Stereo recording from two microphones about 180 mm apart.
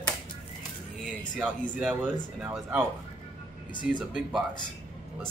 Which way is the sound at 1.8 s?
5° right (ahead or behind).